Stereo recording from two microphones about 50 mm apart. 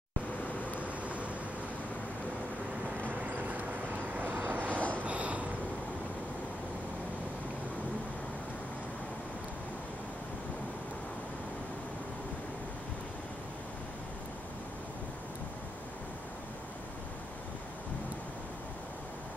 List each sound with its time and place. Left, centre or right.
0.7 s vehicle: right
3.0 s vehicle: right
5.0 s a sound: right